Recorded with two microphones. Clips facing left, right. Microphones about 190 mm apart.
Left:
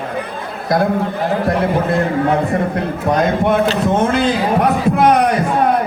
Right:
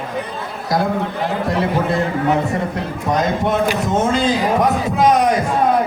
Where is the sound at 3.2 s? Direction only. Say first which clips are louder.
Left 3 dB; 60° left (ahead or behind).